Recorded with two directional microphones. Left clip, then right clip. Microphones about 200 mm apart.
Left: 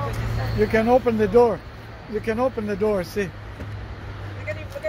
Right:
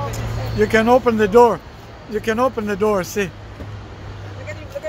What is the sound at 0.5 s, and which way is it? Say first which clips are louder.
Speech: right 4 dB; 10° right (ahead or behind).